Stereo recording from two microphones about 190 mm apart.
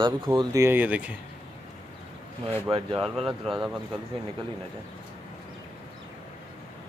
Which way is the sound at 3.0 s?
Centre (ahead or behind).